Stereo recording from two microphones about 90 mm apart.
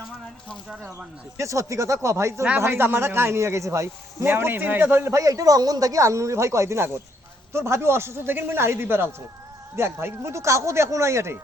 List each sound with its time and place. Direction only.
1.4 s a man's voice: 35° right (ahead or behind)
5.1 s a man's voice: 40° right (ahead or behind)